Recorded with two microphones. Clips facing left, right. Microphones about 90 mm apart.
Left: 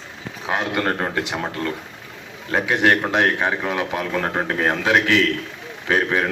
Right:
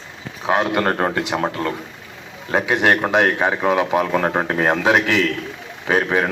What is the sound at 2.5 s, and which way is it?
A man's voice, 15° right (ahead or behind).